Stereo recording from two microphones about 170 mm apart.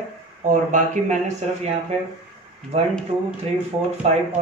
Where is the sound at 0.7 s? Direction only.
45° right (ahead or behind).